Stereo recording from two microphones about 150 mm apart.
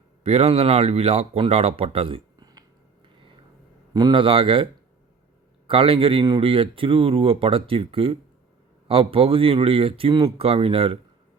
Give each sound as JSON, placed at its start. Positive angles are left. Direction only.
{"t": 0.2, "sound": "speech", "side_deg": -45}
{"t": 3.9, "sound": "speech", "side_deg": -30}